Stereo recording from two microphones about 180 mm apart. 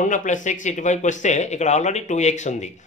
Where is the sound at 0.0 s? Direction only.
45° left (ahead or behind).